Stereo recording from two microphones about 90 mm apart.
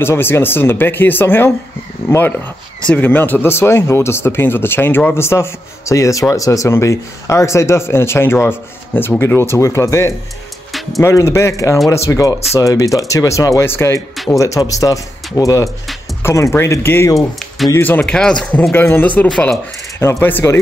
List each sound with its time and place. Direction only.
0.0 s speech: 25° left (ahead or behind)
18.0 s speech: 10° left (ahead or behind)
18.6 s speech: 25° left (ahead or behind)